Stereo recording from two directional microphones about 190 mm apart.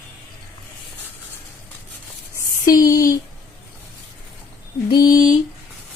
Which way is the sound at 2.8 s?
20° left (ahead or behind).